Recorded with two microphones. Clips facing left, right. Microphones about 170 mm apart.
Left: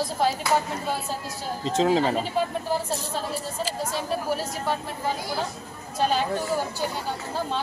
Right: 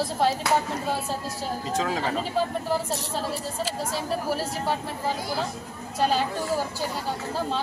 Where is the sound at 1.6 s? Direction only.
25° left (ahead or behind).